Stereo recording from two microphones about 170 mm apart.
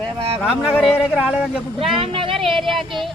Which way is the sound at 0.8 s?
5° left (ahead or behind).